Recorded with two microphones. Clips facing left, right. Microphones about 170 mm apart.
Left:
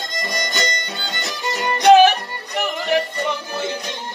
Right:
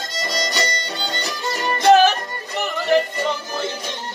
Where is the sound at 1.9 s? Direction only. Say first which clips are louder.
Left 2 dB; 15° left (ahead or behind).